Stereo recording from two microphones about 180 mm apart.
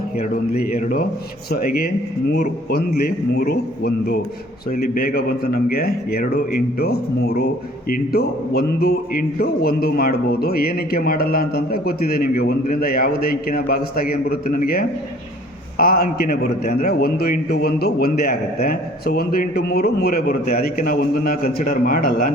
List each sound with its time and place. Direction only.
0.5 s speech: 55° left (ahead or behind)